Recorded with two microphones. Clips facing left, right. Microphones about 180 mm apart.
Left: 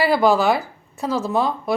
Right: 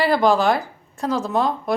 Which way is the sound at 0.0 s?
5° left (ahead or behind).